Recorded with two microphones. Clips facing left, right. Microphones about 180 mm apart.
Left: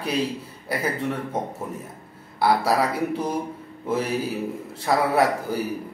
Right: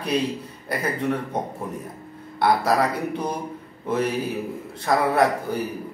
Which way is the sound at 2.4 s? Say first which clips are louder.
Right 1 dB; 5° left (ahead or behind).